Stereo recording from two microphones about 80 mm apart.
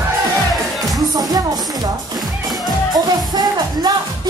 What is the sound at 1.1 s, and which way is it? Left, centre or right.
Music, right.